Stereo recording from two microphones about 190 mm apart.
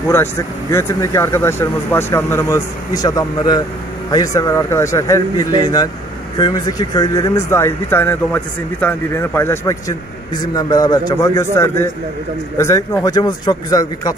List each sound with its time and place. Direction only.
0.1 s speech: 15° left (ahead or behind)